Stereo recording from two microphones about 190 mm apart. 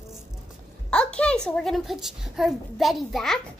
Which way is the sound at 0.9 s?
5° left (ahead or behind).